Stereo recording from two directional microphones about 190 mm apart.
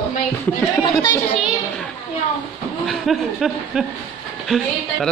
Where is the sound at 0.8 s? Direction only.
20° left (ahead or behind).